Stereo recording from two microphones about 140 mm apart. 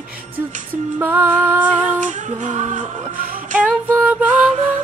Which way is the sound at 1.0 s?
15° right (ahead or behind).